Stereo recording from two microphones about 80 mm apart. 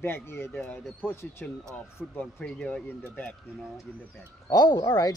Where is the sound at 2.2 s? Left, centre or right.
Centre.